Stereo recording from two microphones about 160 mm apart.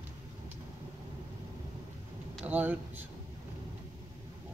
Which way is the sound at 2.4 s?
10° right (ahead or behind).